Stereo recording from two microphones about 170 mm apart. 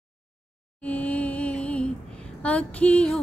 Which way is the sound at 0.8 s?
10° left (ahead or behind).